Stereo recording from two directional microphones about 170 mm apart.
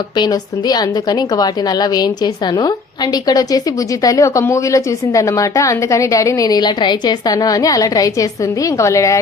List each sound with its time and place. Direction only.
0.2 s a woman's voice: 25° left (ahead or behind)